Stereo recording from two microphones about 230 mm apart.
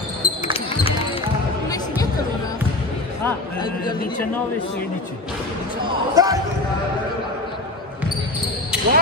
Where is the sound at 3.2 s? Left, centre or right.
Centre.